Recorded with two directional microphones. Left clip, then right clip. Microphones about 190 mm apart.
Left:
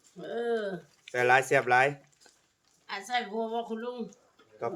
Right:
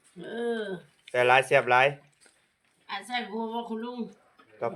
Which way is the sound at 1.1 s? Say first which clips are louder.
Right 3 dB; 5° left (ahead or behind).